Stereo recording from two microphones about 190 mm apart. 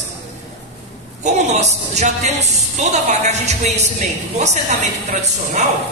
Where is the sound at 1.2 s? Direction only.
35° right (ahead or behind).